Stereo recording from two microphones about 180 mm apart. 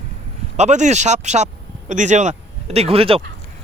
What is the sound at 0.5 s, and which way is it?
A man's voice, 40° right (ahead or behind).